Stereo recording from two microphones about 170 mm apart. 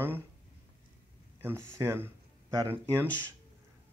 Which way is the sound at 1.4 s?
15° right (ahead or behind).